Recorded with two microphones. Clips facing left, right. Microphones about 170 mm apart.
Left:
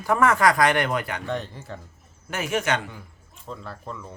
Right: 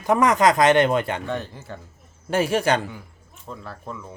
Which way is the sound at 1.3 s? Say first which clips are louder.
Right 1 dB; centre (ahead or behind).